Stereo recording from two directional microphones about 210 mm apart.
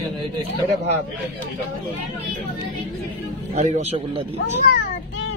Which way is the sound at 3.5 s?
35° right (ahead or behind).